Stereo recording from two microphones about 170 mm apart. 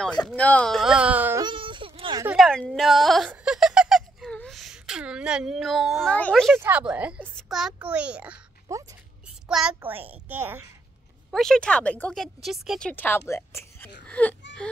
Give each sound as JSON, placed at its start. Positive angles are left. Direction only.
{"t": 0.4, "sound": "speech", "side_deg": 5}
{"t": 1.4, "sound": "whimper", "side_deg": -30}
{"t": 2.3, "sound": "speech", "side_deg": 0}
{"t": 3.3, "sound": "giggle", "side_deg": -5}
{"t": 6.5, "sound": "a child's voice", "side_deg": -10}
{"t": 8.7, "sound": "speech", "side_deg": -20}
{"t": 9.5, "sound": "a child's voice", "side_deg": -5}
{"t": 11.2, "sound": "a woman's voice", "side_deg": 0}